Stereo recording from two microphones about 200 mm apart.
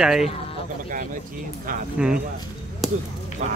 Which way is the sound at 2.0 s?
5° right (ahead or behind).